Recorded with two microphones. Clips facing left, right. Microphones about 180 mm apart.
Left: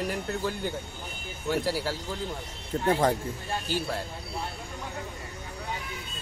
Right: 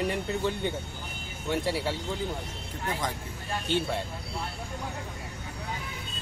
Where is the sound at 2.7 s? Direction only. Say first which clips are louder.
Left 9 dB; 45° left (ahead or behind).